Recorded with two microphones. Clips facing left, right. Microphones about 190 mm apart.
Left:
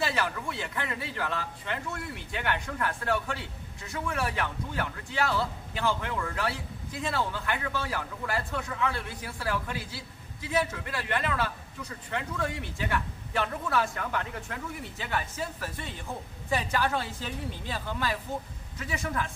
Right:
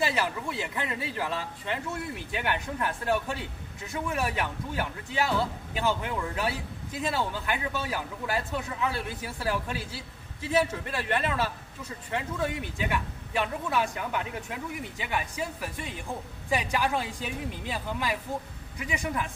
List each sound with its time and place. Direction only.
0.0 s a man's voice: 15° right (ahead or behind)